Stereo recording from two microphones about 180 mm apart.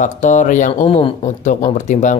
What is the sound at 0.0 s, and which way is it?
Speech, 45° left (ahead or behind).